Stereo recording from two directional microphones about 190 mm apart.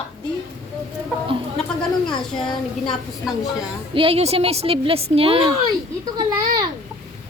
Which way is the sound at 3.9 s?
30° right (ahead or behind).